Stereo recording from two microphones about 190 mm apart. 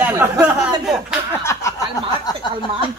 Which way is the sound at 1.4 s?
15° left (ahead or behind).